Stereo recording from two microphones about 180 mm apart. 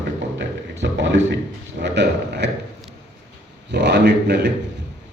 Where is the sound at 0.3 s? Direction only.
80° right.